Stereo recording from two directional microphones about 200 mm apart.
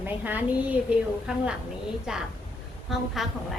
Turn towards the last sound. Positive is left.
turn(degrees=0)  # may be behind; listen again after turning